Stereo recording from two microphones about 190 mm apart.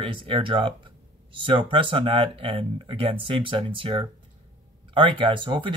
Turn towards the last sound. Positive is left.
turn(degrees=-25)  # may be behind; listen again after turning